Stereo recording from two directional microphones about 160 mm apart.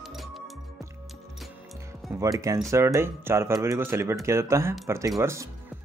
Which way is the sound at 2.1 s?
20° right (ahead or behind).